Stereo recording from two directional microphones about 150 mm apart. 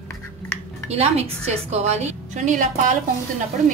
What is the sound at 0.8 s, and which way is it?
A woman's voice, 45° right (ahead or behind).